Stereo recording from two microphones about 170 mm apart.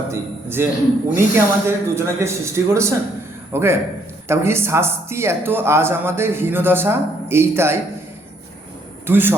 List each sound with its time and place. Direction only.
0.1 s speech: 15° right (ahead or behind)
9.0 s a man's voice: 10° right (ahead or behind)